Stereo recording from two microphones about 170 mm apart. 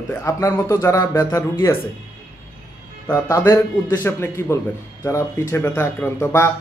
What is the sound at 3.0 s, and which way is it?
Speech, 15° left (ahead or behind).